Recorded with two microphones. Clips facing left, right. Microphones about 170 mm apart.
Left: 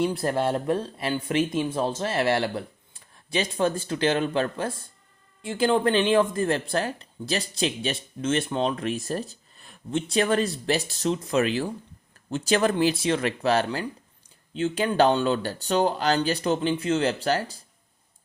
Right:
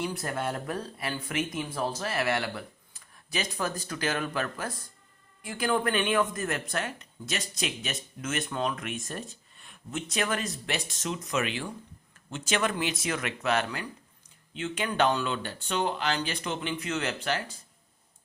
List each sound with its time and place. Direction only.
0.0 s speech: 30° left (ahead or behind)